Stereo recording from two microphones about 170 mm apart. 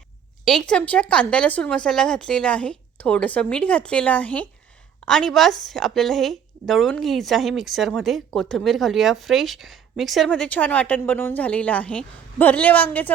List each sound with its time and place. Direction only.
0.4 s a woman's voice: 5° left (ahead or behind)